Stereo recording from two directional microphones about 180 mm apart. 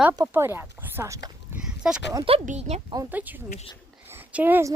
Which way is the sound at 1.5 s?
5° right (ahead or behind).